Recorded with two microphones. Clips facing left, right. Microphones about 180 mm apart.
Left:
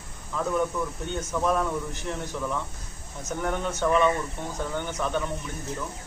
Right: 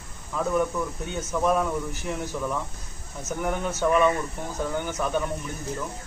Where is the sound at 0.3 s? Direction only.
5° right (ahead or behind).